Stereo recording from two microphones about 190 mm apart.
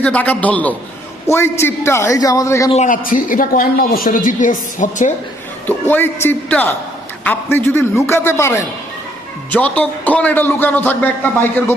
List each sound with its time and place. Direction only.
0.0 s a man's voice: 5° left (ahead or behind)
2.7 s speech: 40° left (ahead or behind)
5.6 s a man's voice: 10° left (ahead or behind)